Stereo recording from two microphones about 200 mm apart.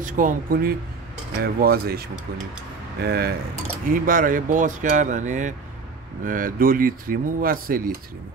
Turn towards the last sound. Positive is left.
turn(degrees=-45)  # may be behind; listen again after turning